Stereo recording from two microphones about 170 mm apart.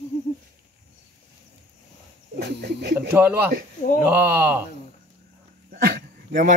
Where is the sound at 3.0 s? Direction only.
10° right (ahead or behind).